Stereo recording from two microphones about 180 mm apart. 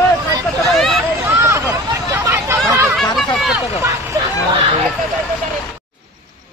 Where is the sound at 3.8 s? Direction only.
15° right (ahead or behind).